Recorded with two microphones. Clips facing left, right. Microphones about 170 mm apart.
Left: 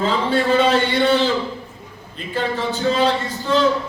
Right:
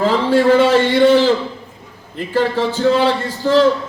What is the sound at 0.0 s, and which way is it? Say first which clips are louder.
Speech: right 5 dB; 90° right.